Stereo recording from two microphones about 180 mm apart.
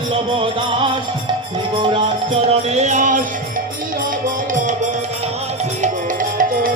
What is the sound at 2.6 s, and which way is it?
Music, 40° right (ahead or behind).